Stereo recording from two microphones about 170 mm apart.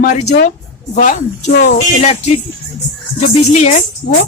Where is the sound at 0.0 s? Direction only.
45° left (ahead or behind).